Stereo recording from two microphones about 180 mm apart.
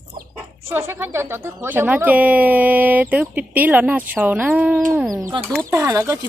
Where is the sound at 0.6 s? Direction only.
15° right (ahead or behind).